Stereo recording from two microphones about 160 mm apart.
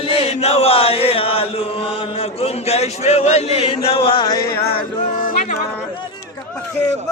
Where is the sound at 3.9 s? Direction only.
35° left (ahead or behind).